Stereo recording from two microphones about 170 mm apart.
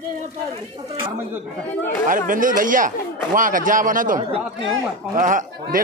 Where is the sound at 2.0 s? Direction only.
50° right (ahead or behind).